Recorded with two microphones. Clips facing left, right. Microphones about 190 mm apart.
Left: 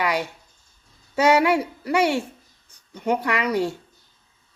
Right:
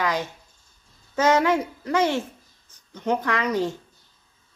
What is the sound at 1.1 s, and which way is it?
Speech, 10° left (ahead or behind).